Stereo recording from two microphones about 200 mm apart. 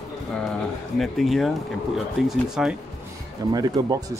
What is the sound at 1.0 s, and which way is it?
Speech, centre (ahead or behind).